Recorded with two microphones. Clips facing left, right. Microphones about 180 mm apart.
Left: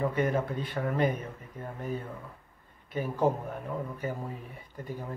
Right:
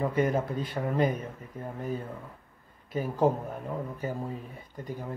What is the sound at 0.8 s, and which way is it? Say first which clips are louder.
Speech: left 1 dB; 15° right (ahead or behind).